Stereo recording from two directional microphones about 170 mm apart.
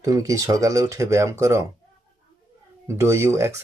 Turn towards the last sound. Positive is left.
turn(degrees=-15)  # may be behind; listen again after turning